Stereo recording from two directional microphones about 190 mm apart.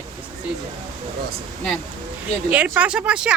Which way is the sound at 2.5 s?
10° right (ahead or behind).